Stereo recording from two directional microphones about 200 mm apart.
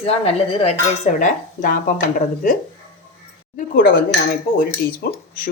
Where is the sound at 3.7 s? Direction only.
50° left (ahead or behind).